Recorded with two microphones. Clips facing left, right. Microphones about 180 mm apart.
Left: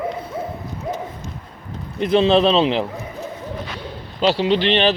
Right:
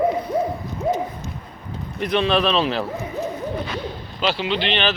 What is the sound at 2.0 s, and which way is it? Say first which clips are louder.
Speech: left 5 dB; 25° left (ahead or behind).